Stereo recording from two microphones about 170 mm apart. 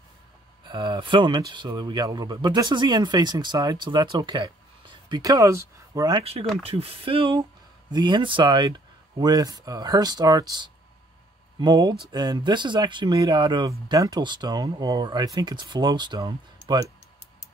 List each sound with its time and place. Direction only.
0.7 s speech: 30° right (ahead or behind)
6.6 s speech: 35° right (ahead or behind)